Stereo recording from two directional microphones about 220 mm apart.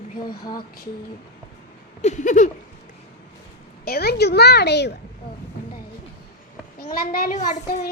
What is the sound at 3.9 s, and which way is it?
A child's voice, 45° left (ahead or behind).